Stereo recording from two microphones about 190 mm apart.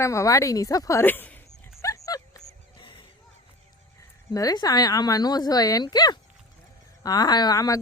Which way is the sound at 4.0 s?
20° left (ahead or behind).